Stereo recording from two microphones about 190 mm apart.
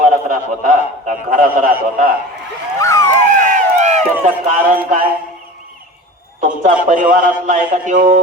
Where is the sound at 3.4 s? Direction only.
40° right (ahead or behind).